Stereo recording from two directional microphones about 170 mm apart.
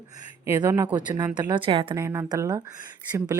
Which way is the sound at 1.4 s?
30° right (ahead or behind).